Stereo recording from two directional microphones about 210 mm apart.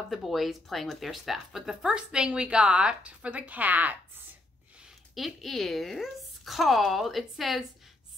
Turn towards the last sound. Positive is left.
turn(degrees=0)  # may be behind; listen again after turning